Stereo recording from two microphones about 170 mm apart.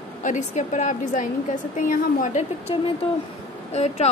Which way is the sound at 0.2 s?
45° left (ahead or behind).